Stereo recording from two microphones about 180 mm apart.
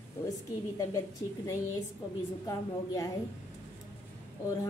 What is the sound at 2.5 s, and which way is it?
Speech, 20° left (ahead or behind).